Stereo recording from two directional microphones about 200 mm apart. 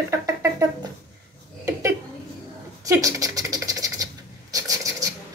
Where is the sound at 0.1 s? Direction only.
15° right (ahead or behind).